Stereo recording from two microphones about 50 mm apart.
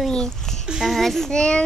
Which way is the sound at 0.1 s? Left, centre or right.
Centre.